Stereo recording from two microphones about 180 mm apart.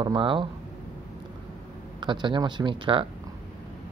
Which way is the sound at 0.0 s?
25° right (ahead or behind).